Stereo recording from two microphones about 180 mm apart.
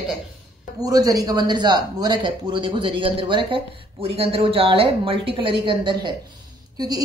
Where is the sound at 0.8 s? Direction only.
20° right (ahead or behind).